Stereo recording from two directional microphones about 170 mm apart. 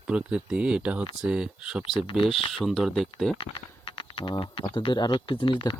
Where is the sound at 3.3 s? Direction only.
30° left (ahead or behind).